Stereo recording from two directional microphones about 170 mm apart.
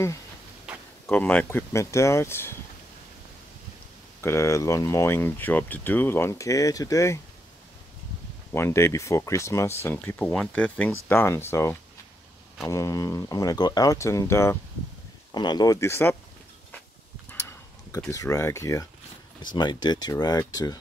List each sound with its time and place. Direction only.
0.7 s a sound: 5° right (ahead or behind)
1.0 s speech: 10° left (ahead or behind)
4.2 s speech: 15° left (ahead or behind)
8.5 s speech: 15° left (ahead or behind)
17.3 s a sound: 15° left (ahead or behind)
18.1 s speech: 20° left (ahead or behind)